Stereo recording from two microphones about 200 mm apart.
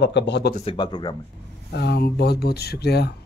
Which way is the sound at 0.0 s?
60° left (ahead or behind).